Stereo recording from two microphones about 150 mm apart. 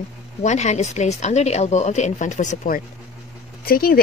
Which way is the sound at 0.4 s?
50° left (ahead or behind).